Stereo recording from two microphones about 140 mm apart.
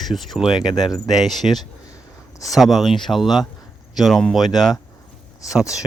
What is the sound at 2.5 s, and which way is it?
Speech, centre (ahead or behind).